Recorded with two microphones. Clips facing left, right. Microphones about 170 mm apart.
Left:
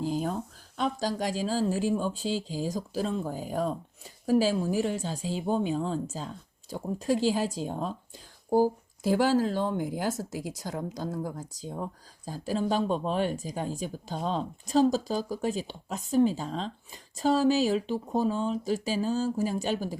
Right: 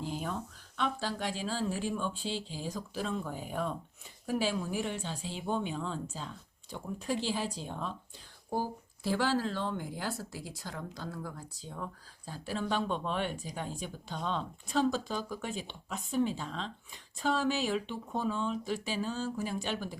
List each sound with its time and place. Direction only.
0.0 s speech: 40° left (ahead or behind)